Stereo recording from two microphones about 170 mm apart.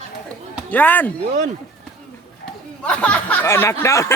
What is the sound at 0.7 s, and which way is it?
Speech, 10° left (ahead or behind).